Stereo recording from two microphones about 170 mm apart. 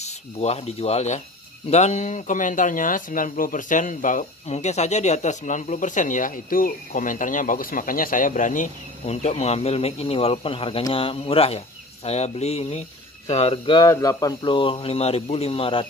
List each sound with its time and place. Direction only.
0.0 s speech: 40° left (ahead or behind)